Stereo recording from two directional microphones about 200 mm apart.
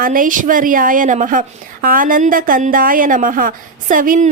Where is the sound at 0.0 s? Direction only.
45° right (ahead or behind).